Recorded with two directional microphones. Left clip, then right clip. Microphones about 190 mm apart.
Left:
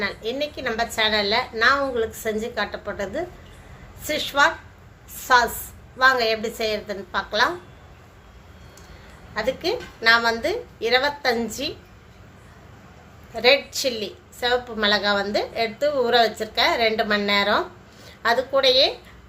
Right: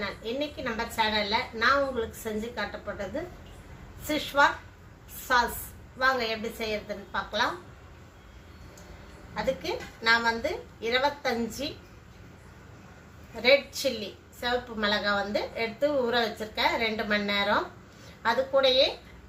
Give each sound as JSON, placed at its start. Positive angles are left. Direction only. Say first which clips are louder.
{"t": 0.0, "sound": "a woman's voice", "louder": "left 6 dB", "side_deg": 55}
{"t": 9.3, "sound": "a woman's voice", "louder": "left 6 dB", "side_deg": 55}
{"t": 13.3, "sound": "a woman's voice", "louder": "left 4 dB", "side_deg": 55}